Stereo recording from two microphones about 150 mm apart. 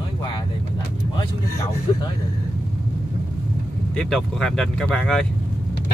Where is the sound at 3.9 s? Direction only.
5° left (ahead or behind).